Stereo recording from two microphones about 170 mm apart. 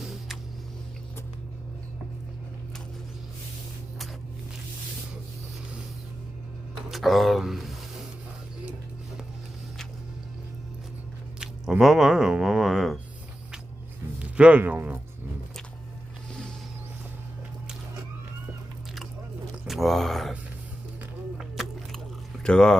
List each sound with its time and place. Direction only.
0.0 s a sound: centre (ahead or behind)
6.9 s speech: centre (ahead or behind)
11.3 s speech: 5° right (ahead or behind)
14.2 s speech: 5° right (ahead or behind)
19.6 s a sound: centre (ahead or behind)
22.4 s speech: 5° left (ahead or behind)